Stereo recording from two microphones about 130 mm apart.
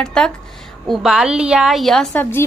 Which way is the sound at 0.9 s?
5° right (ahead or behind).